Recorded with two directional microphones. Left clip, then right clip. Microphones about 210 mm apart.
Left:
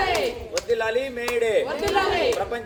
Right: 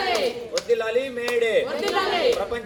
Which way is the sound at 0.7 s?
15° left (ahead or behind).